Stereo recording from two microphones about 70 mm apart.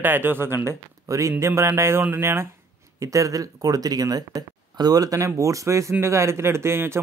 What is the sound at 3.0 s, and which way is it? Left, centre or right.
A man's voice, right.